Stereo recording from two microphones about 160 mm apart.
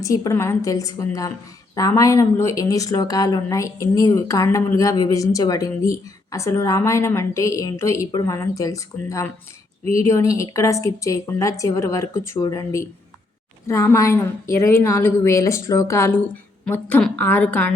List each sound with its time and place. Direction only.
0.0 s a woman's voice: 20° left (ahead or behind)